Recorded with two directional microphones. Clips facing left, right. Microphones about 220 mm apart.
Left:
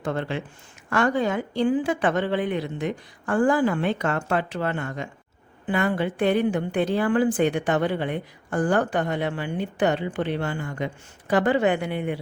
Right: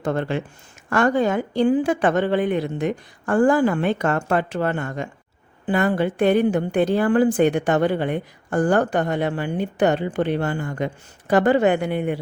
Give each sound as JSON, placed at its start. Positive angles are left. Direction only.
{"t": 0.0, "sound": "a woman's voice", "side_deg": -45}